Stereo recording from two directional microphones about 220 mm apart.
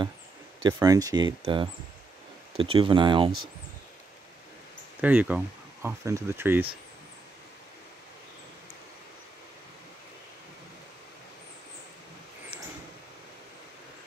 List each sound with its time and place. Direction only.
0.7 s speech: 15° right (ahead or behind)
5.0 s speech: 5° right (ahead or behind)